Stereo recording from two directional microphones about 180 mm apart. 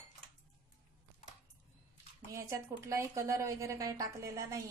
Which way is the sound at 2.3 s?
15° right (ahead or behind).